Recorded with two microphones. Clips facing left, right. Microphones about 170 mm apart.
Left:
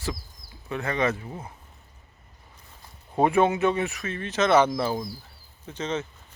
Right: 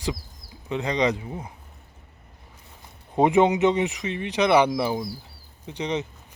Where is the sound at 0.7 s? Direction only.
20° right (ahead or behind).